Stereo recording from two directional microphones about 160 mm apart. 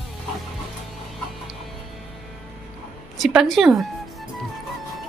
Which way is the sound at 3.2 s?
Centre (ahead or behind).